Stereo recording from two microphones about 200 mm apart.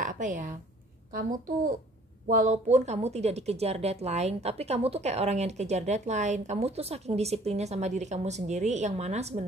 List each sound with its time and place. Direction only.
0.0 s a woman's voice: 40° right (ahead or behind)
2.2 s speech: 40° right (ahead or behind)